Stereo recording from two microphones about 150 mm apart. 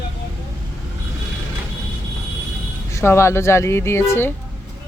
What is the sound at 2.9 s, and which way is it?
Speech, 20° left (ahead or behind).